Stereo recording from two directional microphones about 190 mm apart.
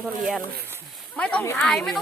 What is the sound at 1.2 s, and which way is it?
Speech, 5° left (ahead or behind).